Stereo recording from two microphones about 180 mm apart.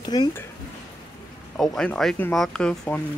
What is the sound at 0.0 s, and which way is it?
Speech, 25° left (ahead or behind).